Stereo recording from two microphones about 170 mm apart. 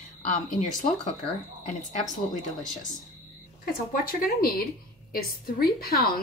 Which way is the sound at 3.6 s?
55° left (ahead or behind).